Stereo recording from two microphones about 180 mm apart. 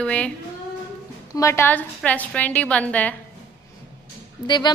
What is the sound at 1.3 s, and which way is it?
A woman's voice, 15° left (ahead or behind).